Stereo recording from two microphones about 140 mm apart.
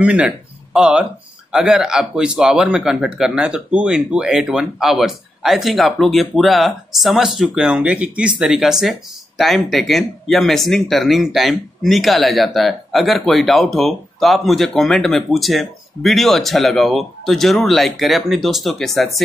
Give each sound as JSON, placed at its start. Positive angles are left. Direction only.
{"t": 0.0, "sound": "speech", "side_deg": -10}